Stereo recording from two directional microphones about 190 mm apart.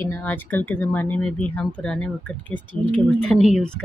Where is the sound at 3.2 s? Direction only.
Centre (ahead or behind).